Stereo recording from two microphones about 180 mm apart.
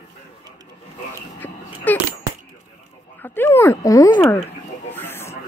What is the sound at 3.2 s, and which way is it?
Speech, 10° left (ahead or behind).